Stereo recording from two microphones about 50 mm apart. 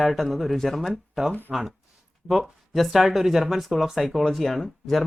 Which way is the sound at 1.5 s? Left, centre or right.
Centre.